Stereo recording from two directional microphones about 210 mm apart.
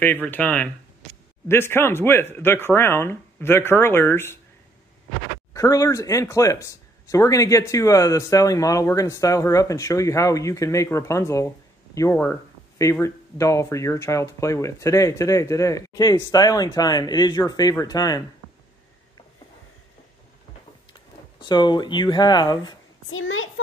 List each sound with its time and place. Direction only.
0.0 s speech: 10° left (ahead or behind)
5.5 s speech: 15° left (ahead or behind)
21.4 s speech: 20° left (ahead or behind)
23.0 s a child's voice: 70° left (ahead or behind)